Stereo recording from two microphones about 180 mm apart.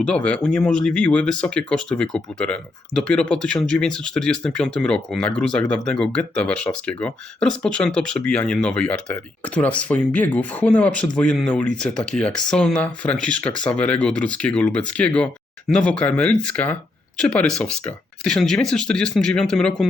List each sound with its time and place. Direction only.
0.0 s speech: 5° left (ahead or behind)